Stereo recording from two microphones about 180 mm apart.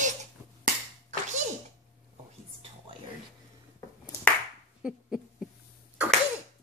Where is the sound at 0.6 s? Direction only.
40° right (ahead or behind).